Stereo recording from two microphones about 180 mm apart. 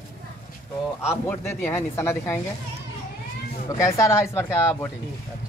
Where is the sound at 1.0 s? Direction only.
15° left (ahead or behind).